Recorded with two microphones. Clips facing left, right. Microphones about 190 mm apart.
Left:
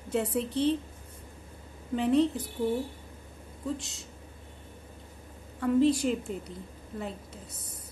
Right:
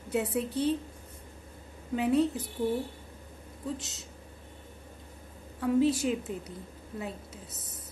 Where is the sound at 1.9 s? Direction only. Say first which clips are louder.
Left 1 dB; 5° right (ahead or behind).